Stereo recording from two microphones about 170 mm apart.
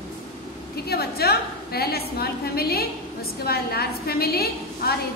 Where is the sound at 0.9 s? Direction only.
65° left (ahead or behind).